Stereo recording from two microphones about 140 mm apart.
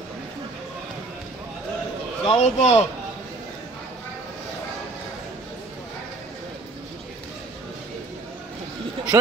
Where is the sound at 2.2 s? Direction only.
45° left (ahead or behind).